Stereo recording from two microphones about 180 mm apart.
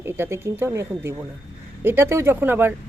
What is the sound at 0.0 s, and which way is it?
Speech, 15° right (ahead or behind).